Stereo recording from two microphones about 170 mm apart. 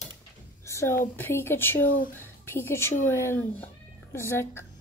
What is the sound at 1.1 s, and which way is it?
A woman's voice, 15° left (ahead or behind).